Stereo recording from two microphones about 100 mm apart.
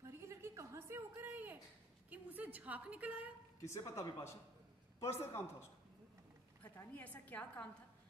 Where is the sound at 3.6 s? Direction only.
30° left (ahead or behind).